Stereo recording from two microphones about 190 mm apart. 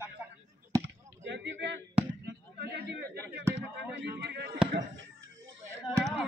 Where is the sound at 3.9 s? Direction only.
60° right (ahead or behind).